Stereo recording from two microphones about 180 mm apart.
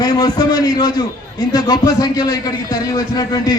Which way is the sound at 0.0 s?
20° left (ahead or behind).